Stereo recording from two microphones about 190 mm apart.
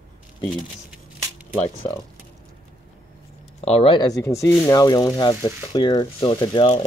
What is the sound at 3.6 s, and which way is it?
Speech, 35° left (ahead or behind).